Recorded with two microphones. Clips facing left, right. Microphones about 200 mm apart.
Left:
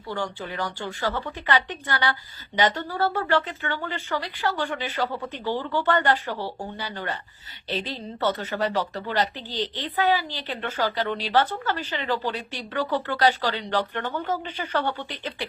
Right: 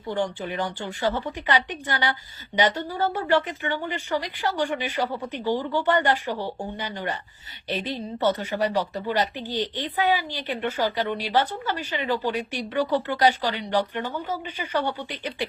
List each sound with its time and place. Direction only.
0.1 s speech: 20° right (ahead or behind)